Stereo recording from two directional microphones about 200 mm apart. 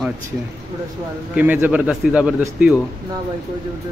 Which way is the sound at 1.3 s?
10° right (ahead or behind).